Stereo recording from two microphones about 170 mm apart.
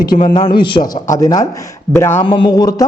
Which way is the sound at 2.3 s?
30° left (ahead or behind).